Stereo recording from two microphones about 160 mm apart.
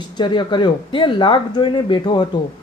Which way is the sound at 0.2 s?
30° left (ahead or behind).